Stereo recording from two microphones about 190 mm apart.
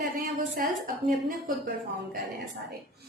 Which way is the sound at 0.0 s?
50° right (ahead or behind).